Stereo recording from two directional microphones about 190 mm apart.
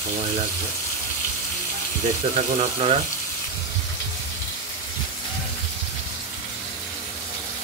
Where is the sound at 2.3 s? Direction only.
30° right (ahead or behind).